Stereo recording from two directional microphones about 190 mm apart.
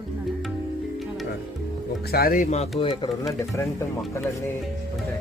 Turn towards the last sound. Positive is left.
turn(degrees=15)  # may be behind; listen again after turning